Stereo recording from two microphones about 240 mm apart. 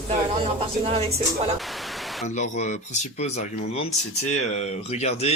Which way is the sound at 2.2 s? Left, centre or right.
Left.